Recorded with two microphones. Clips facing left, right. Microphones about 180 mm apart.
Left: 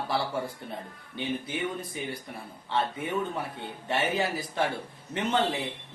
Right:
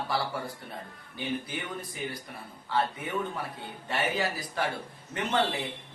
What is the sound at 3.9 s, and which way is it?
Speech, 25° left (ahead or behind).